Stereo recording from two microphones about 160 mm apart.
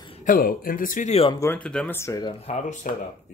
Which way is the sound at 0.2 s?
60° left (ahead or behind).